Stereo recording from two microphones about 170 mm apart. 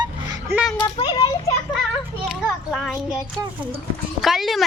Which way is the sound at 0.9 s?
25° left (ahead or behind).